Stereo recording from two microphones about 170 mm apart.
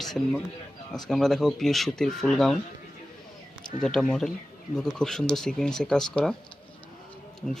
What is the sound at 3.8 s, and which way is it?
Speech, 5° left (ahead or behind).